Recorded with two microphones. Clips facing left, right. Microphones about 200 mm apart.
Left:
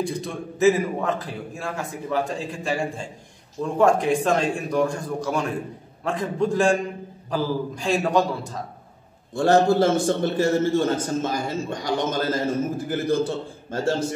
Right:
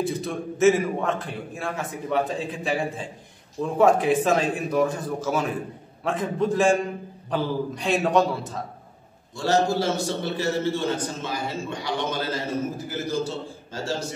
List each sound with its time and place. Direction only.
0.0 s a man's voice: centre (ahead or behind)
9.3 s a man's voice: 55° left (ahead or behind)